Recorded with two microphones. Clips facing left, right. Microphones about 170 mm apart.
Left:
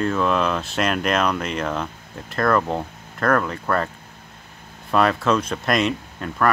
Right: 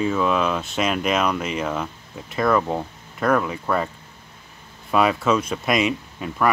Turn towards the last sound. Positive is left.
turn(degrees=-5)  # may be behind; listen again after turning